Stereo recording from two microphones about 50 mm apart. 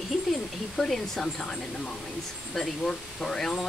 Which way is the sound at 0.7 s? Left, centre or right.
Centre.